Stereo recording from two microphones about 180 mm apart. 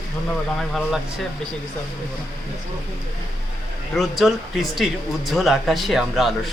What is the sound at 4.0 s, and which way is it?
Speech, centre (ahead or behind).